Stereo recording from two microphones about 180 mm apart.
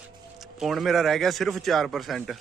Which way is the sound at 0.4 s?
Centre (ahead or behind).